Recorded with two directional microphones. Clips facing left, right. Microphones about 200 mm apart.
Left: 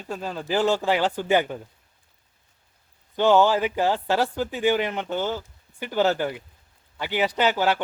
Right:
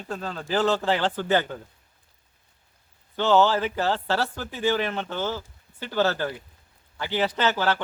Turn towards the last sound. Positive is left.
turn(degrees=15)  # may be behind; listen again after turning